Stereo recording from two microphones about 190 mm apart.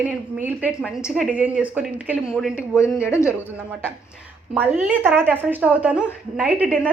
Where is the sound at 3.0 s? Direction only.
15° left (ahead or behind).